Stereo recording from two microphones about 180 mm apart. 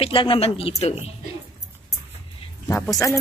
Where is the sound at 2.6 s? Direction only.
15° left (ahead or behind).